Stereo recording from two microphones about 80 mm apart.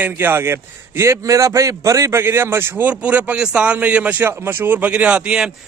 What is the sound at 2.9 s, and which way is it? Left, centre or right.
A man's voice, centre.